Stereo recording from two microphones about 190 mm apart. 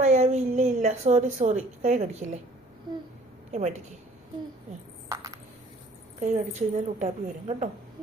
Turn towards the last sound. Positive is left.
turn(degrees=-40)  # may be behind; listen again after turning